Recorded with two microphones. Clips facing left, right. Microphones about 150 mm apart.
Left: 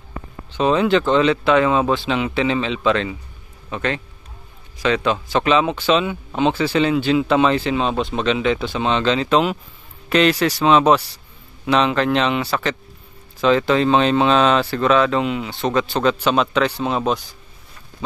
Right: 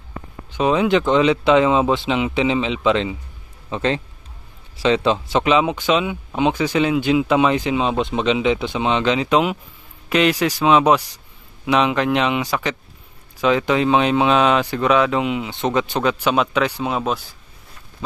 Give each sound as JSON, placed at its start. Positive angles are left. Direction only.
{"t": 0.5, "sound": "a man's voice", "side_deg": -10}